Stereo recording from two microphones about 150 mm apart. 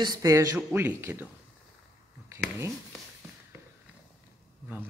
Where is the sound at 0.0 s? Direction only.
25° right (ahead or behind).